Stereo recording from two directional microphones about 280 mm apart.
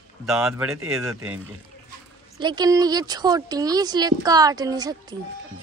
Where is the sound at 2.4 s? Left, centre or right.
Centre.